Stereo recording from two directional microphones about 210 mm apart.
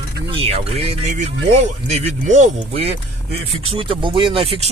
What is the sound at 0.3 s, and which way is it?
Speech, 25° right (ahead or behind).